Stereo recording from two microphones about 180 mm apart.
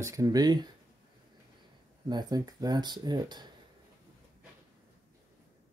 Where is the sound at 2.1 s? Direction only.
20° right (ahead or behind).